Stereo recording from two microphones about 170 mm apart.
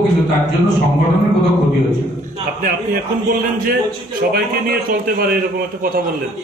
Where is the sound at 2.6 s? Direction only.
60° right (ahead or behind).